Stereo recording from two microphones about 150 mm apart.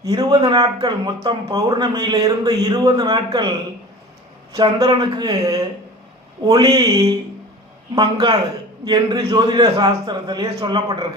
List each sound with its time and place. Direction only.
0.0 s speech: 25° right (ahead or behind)
4.8 s a man's voice: 30° right (ahead or behind)